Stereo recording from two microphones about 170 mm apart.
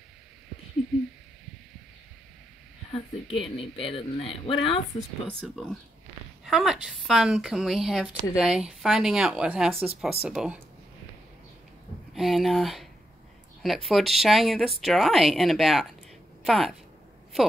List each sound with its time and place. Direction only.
0.9 s owl: centre (ahead or behind)
2.9 s speech: 35° left (ahead or behind)
5.4 s a woman's voice: 5° left (ahead or behind)
12.1 s a woman's voice: centre (ahead or behind)